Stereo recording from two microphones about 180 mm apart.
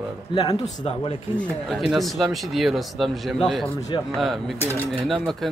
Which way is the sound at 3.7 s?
20° left (ahead or behind).